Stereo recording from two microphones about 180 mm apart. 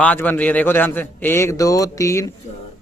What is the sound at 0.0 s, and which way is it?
A man's voice, 10° left (ahead or behind).